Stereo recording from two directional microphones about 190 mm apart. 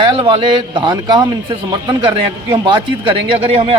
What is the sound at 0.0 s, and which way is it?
A man's voice, 25° right (ahead or behind).